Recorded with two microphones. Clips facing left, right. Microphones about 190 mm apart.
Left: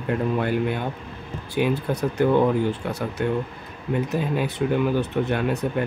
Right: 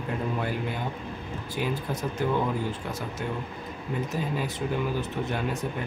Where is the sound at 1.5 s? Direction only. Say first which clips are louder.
Left 8 dB; 65° left (ahead or behind).